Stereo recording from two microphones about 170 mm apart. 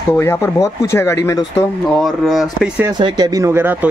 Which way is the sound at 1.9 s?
Centre (ahead or behind).